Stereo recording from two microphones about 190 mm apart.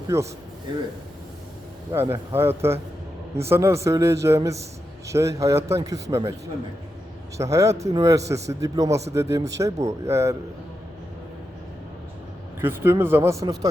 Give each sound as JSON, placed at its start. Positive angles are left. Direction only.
{"t": 0.1, "sound": "speech", "side_deg": -15}
{"t": 1.9, "sound": "speech", "side_deg": -15}
{"t": 7.3, "sound": "speech", "side_deg": -15}
{"t": 12.5, "sound": "speech", "side_deg": -10}